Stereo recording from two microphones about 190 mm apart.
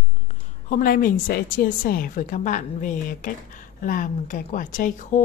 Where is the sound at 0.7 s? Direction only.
45° left (ahead or behind).